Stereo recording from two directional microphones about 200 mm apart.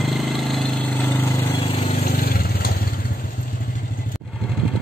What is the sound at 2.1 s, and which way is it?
Vehicle, 45° left (ahead or behind).